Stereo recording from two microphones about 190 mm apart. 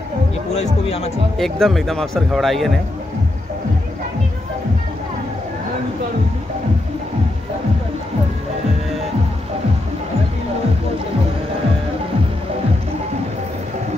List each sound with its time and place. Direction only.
0.6 s speech: 35° left (ahead or behind)
1.4 s speech: centre (ahead or behind)